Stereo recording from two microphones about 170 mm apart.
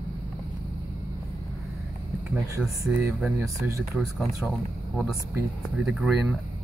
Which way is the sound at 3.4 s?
15° right (ahead or behind).